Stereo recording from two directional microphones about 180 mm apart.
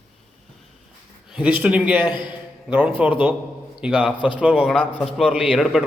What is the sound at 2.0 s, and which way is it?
Speech, 25° left (ahead or behind).